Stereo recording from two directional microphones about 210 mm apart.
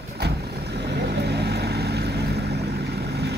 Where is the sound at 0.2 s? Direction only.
50° right (ahead or behind).